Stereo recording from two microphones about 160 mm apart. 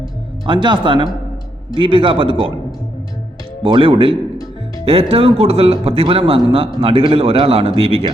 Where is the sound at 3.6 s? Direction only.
35° right (ahead or behind).